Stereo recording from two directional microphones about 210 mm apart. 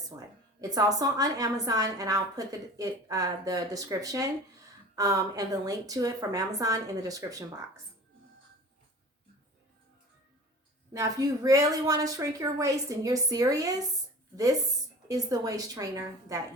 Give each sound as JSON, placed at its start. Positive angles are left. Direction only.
{"t": 0.1, "sound": "a woman's voice", "side_deg": -20}
{"t": 10.9, "sound": "a woman's voice", "side_deg": -15}
{"t": 15.0, "sound": "a woman's voice", "side_deg": -15}